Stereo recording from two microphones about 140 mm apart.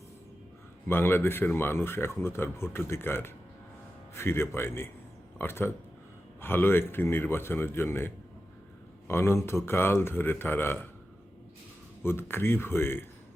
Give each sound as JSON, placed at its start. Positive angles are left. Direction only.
{"t": 0.9, "sound": "speech", "side_deg": 15}
{"t": 12.0, "sound": "speech", "side_deg": 15}